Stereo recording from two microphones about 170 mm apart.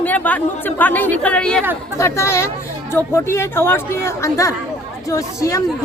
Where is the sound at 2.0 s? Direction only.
15° left (ahead or behind).